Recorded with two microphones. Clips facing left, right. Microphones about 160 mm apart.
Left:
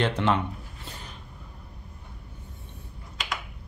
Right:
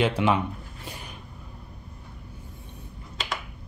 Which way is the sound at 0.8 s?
10° right (ahead or behind).